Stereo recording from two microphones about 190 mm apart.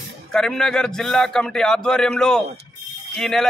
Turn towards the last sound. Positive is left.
turn(degrees=5)  # may be behind; listen again after turning